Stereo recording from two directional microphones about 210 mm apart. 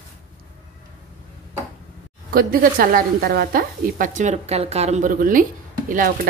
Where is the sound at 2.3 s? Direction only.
45° right (ahead or behind).